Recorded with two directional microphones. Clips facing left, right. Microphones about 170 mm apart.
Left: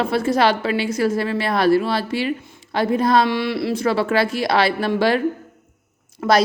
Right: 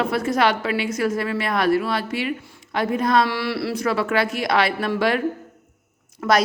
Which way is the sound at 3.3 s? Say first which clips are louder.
Left 3 dB; 20° left (ahead or behind).